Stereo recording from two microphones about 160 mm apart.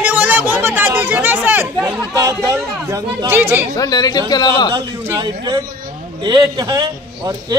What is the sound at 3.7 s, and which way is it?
A woman's voice, 20° left (ahead or behind).